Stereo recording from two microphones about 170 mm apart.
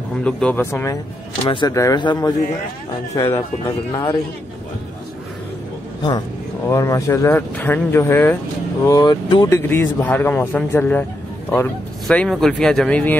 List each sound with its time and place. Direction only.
0.2 s speech: 5° left (ahead or behind); by 4.2 s 25° left (ahead or behind)
6.7 s speech: 15° left (ahead or behind)
9.6 s speech: 15° left (ahead or behind)